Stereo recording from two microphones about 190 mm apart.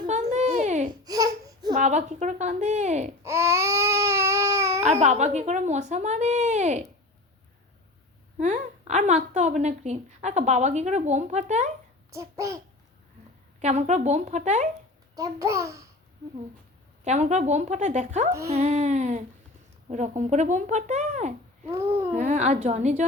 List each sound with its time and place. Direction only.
0.1 s a sound: 40° right (ahead or behind)
1.0 s a sound: 20° right (ahead or behind)
1.7 s a woman's voice: 35° right (ahead or behind)
3.2 s baby cry: 15° right (ahead or behind)
4.8 s a woman's voice: 35° right (ahead or behind)
8.4 s a woman's voice: 40° right (ahead or behind)
12.1 s a child's voice: 15° right (ahead or behind)
13.6 s a woman's voice: 35° right (ahead or behind)
15.1 s a child's voice: 20° right (ahead or behind)
17.0 s a woman's voice: 40° right (ahead or behind)
21.7 s a child's voice: 15° right (ahead or behind)
22.1 s a woman's voice: 40° right (ahead or behind)